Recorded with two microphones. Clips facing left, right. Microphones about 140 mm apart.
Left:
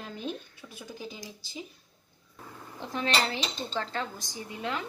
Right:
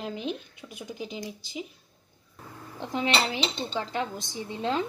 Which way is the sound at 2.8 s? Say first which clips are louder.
Right 2 dB; 15° right (ahead or behind).